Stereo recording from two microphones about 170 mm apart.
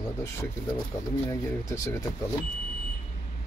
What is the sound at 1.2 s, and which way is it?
Speech, 20° left (ahead or behind).